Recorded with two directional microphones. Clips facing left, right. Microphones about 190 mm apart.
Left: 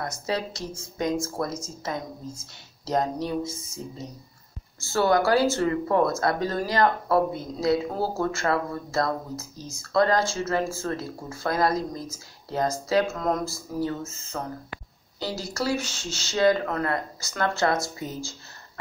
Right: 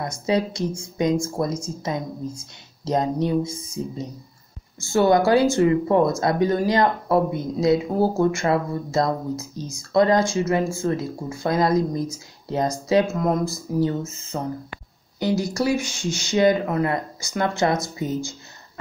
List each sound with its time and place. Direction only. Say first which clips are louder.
0.3 s speech: right 8 dB; 15° right (ahead or behind)
4.9 s speech: right 4 dB; 20° right (ahead or behind)